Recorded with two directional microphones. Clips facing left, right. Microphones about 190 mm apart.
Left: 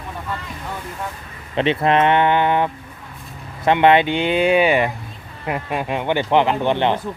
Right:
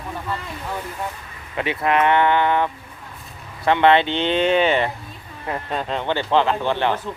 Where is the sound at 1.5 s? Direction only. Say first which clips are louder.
Left 4 dB; 25° left (ahead or behind).